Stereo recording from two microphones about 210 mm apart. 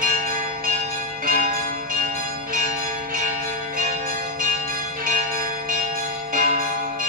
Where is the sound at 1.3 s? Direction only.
40° right (ahead or behind).